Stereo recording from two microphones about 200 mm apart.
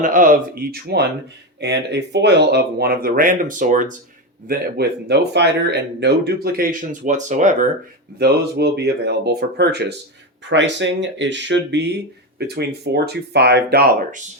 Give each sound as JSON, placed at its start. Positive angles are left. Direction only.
{"t": 0.0, "sound": "speech", "side_deg": -40}
{"t": 4.4, "sound": "speech", "side_deg": -55}
{"t": 8.2, "sound": "speech", "side_deg": -55}